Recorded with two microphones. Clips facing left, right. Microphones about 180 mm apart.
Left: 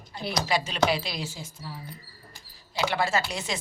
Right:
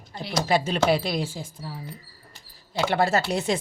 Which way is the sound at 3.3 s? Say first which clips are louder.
Right 8 dB; 55° right (ahead or behind).